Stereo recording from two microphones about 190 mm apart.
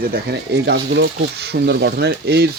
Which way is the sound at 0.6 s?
65° right (ahead or behind).